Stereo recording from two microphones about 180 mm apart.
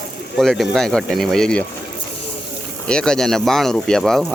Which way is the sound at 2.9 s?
5° left (ahead or behind).